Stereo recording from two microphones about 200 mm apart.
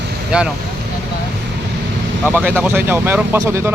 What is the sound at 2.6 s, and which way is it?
Speech, 10° right (ahead or behind).